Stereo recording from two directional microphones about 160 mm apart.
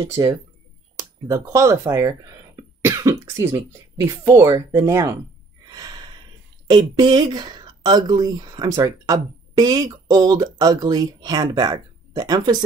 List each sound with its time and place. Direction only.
0.0 s speech: 25° right (ahead or behind)
5.8 s a sound: 25° right (ahead or behind)
6.7 s speech: 25° right (ahead or behind)